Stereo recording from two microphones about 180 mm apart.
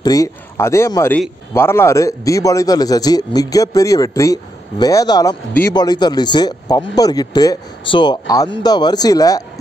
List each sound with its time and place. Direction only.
0.0 s a man's voice: 20° left (ahead or behind)
5.5 s a man's voice: 10° left (ahead or behind)
5.8 s a man's voice: 25° left (ahead or behind)